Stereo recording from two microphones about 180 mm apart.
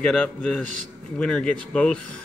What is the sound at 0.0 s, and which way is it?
Speech, 5° left (ahead or behind).